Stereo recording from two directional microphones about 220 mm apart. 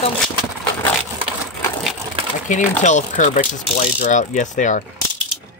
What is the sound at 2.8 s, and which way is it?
Speech, 35° left (ahead or behind).